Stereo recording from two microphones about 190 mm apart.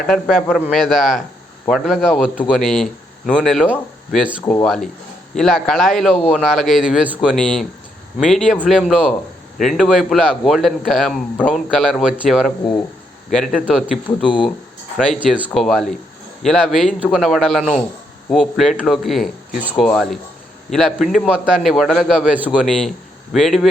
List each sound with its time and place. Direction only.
0.1 s a man's voice: centre (ahead or behind)